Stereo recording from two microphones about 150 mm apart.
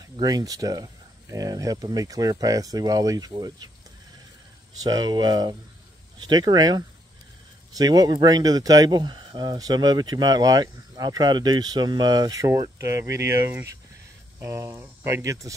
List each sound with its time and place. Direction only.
0.2 s speech: 25° right (ahead or behind)
4.8 s speech: 30° right (ahead or behind)